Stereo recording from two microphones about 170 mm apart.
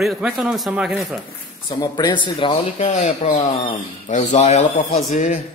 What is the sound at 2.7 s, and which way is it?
Speech, 45° left (ahead or behind).